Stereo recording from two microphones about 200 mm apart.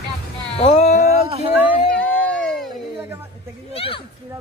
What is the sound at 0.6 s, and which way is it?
Speech, 30° left (ahead or behind).